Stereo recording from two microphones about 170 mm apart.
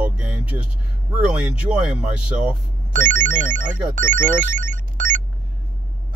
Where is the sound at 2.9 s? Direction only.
50° right (ahead or behind).